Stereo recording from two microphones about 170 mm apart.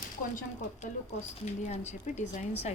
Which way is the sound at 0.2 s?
50° left (ahead or behind).